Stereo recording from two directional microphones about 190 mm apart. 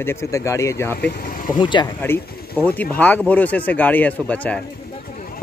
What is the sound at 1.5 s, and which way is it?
Speech, 25° left (ahead or behind).